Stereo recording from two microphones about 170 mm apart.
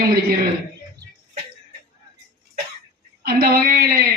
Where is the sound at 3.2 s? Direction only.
65° right (ahead or behind).